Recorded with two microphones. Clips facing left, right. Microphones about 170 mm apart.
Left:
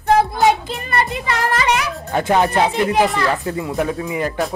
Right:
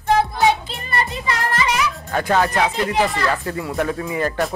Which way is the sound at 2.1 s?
20° left (ahead or behind).